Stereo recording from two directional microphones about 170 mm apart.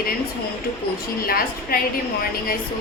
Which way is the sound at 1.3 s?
60° left (ahead or behind).